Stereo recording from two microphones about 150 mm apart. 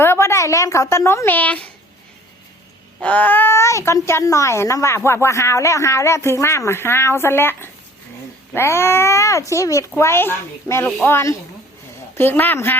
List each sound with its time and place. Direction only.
0.0 s a woman's voice: 15° left (ahead or behind)
3.0 s speech: 10° left (ahead or behind)